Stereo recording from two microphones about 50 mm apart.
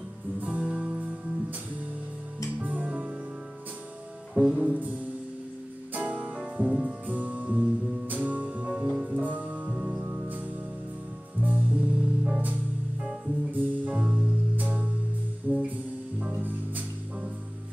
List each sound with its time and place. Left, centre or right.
0.5 s music: right
2.6 s music: right
4.3 s music: centre
4.6 s music: right
10.0 s music: right
11.4 s music: right
13.5 s music: right